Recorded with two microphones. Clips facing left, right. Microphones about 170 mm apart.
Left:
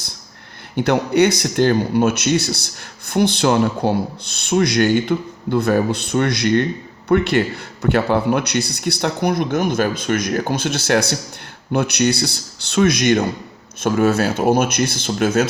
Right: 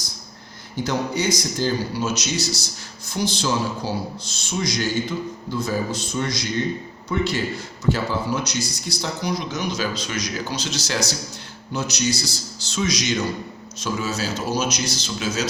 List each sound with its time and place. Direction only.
0.8 s speech: 65° left (ahead or behind)